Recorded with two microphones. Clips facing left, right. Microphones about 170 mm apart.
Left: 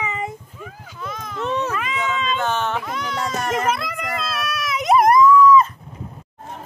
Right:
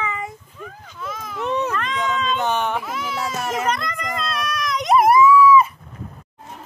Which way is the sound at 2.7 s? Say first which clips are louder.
Even; 5° right (ahead or behind).